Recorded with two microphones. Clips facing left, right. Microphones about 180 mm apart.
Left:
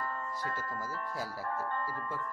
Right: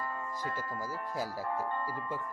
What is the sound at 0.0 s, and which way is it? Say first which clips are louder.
Speech: even; 15° right (ahead or behind).